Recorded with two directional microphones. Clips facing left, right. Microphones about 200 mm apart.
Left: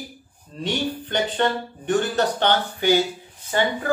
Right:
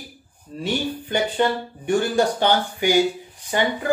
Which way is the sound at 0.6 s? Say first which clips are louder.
Right 1 dB; 10° right (ahead or behind).